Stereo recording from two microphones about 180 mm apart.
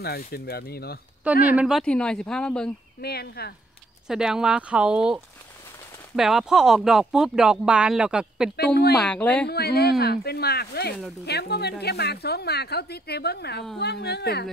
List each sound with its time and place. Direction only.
0.0 s a woman's voice: 60° left (ahead or behind)
1.5 s speech: 5° right (ahead or behind)
3.0 s a woman's voice: 60° left (ahead or behind)
4.1 s speech: 5° right (ahead or behind)
8.5 s a woman's voice: 65° left (ahead or behind)
8.9 s speech: 5° left (ahead or behind)
9.5 s a woman's voice: 60° left (ahead or behind)